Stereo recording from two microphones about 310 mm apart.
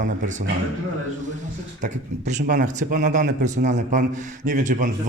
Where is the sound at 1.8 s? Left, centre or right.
Right.